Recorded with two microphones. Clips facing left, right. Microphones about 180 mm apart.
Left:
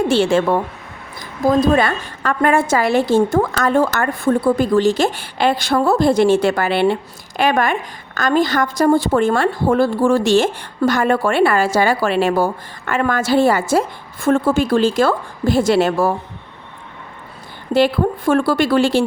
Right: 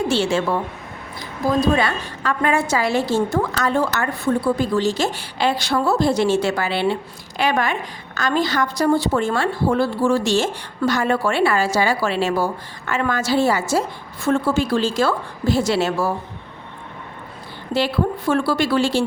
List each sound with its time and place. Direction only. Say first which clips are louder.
0.1 s a woman's voice: left 5 dB; 55° left (ahead or behind)
17.7 s a woman's voice: left 5 dB; 50° left (ahead or behind)